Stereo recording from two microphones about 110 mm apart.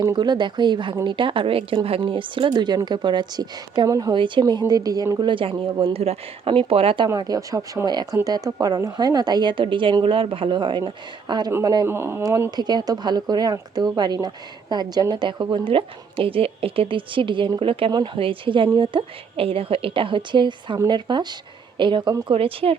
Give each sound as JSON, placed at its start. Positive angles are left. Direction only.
{"t": 0.0, "sound": "a woman's voice", "side_deg": -40}
{"t": 4.1, "sound": "a woman's voice", "side_deg": -45}
{"t": 5.2, "sound": "a woman's voice", "side_deg": -50}
{"t": 5.8, "sound": "speech", "side_deg": -60}
{"t": 7.1, "sound": "a woman's voice", "side_deg": -35}
{"t": 11.9, "sound": "speech", "side_deg": -20}
{"t": 12.5, "sound": "speech", "side_deg": -40}
{"t": 15.6, "sound": "a woman's voice", "side_deg": -55}
{"t": 22.3, "sound": "speech", "side_deg": -60}